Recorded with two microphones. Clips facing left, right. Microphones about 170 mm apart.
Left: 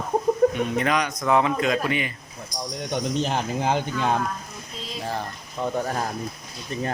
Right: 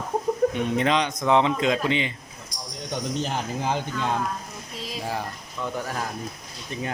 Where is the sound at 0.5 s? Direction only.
25° right (ahead or behind).